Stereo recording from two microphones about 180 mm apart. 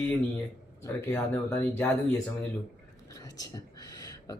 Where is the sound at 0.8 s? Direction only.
15° left (ahead or behind).